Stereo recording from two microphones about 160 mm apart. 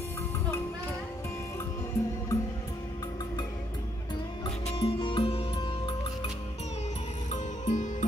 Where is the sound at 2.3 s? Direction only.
20° left (ahead or behind).